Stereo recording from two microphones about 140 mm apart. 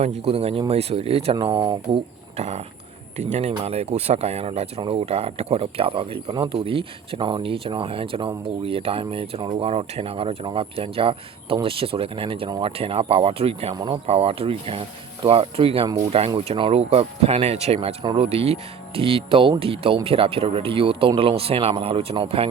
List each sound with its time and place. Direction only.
0.0 s speech: 50° right (ahead or behind)